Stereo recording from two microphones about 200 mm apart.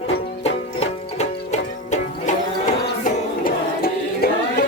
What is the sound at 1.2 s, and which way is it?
Music, 35° left (ahead or behind).